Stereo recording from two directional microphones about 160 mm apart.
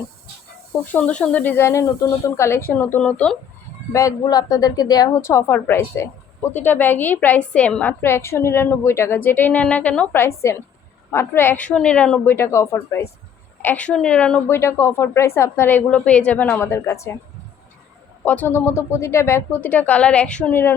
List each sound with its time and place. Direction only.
0.9 s a woman's voice: 5° left (ahead or behind)
3.9 s a woman's voice: 20° left (ahead or behind)
18.3 s a woman's voice: 10° left (ahead or behind)